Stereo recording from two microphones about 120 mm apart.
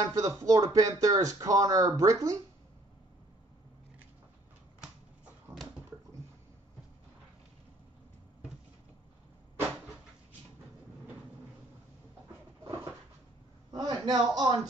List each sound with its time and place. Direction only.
0.0 s speech: 25° right (ahead or behind)
13.7 s speech: 35° right (ahead or behind)